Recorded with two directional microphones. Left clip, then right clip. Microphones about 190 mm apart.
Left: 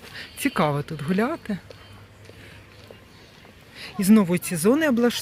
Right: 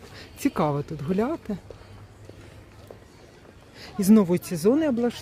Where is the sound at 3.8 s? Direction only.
15° right (ahead or behind).